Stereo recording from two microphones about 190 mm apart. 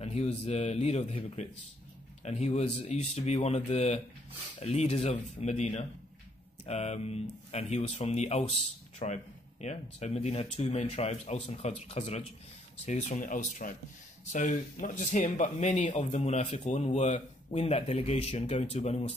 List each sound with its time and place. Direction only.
0.0 s speech: 35° left (ahead or behind)